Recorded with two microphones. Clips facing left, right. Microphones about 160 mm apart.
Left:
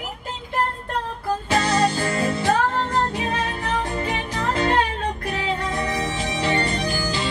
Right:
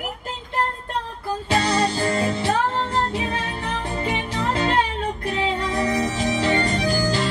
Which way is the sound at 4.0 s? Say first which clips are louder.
Right 1 dB; 25° right (ahead or behind).